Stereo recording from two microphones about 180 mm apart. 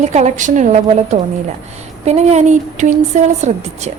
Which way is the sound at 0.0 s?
40° right (ahead or behind).